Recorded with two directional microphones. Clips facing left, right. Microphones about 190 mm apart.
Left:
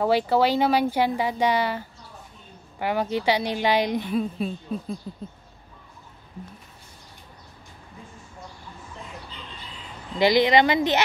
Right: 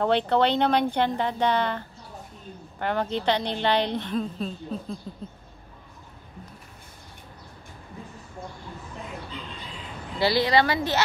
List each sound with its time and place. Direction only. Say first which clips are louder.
0.0 s a woman's voice: left 1 dB; 5° left (ahead or behind)
10.1 s speech: left 3 dB; 20° left (ahead or behind)